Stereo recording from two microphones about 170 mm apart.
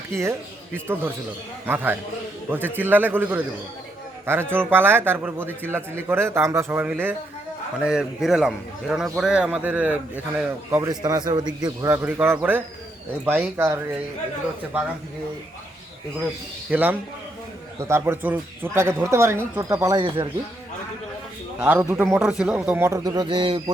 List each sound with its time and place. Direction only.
0.2 s a man's voice: 15° right (ahead or behind)
16.6 s a man's voice: 10° right (ahead or behind); by 20.3 s 25° right (ahead or behind)
21.6 s a man's voice: 10° right (ahead or behind); by 23.7 s 30° right (ahead or behind)